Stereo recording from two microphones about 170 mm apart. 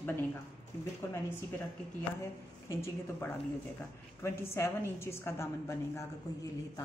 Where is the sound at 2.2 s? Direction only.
15° left (ahead or behind).